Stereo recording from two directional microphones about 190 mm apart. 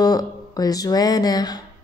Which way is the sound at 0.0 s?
20° left (ahead or behind).